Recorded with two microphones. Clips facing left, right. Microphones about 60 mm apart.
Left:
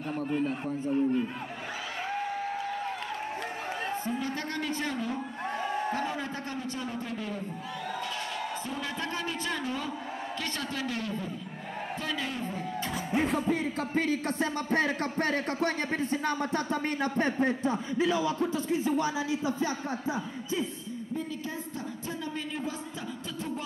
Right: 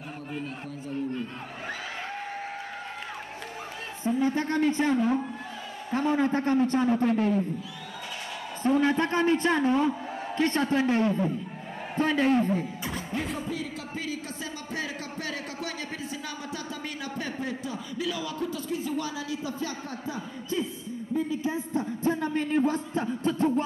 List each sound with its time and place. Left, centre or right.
0.4 s a man's voice: centre
4.0 s a woman's voice: right
8.7 s a man's voice: right
13.5 s speech: left
21.7 s a man's voice: right